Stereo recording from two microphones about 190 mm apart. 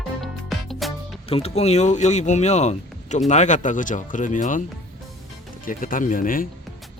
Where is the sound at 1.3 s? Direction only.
35° left (ahead or behind).